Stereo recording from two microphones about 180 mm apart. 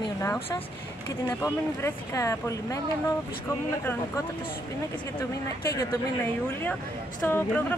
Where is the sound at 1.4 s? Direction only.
15° left (ahead or behind).